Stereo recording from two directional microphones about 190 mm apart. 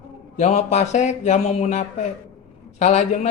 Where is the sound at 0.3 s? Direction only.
40° left (ahead or behind).